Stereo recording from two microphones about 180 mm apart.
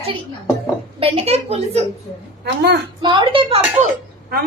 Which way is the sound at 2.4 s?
70° right (ahead or behind).